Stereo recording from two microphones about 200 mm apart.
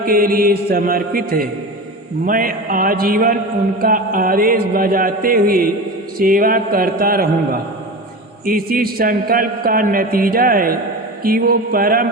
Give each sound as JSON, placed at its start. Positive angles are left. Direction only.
{"t": 0.0, "sound": "a man's voice", "side_deg": -45}